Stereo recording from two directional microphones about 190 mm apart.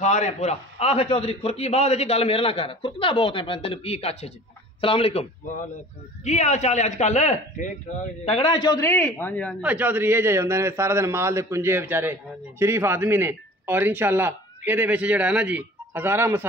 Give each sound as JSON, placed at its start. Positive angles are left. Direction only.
{"t": 0.0, "sound": "a man's voice", "side_deg": 35}
{"t": 6.2, "sound": "a man's voice", "side_deg": 35}
{"t": 9.6, "sound": "a man's voice", "side_deg": -10}